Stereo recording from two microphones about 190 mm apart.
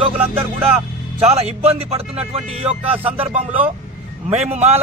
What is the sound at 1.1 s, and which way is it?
Speech, 30° right (ahead or behind).